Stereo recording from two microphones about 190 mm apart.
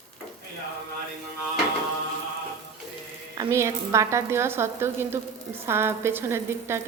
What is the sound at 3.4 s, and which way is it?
A woman's voice, 15° right (ahead or behind).